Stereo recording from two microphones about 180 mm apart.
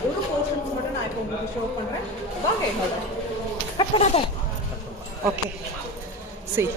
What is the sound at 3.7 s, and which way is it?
Speech, 35° left (ahead or behind).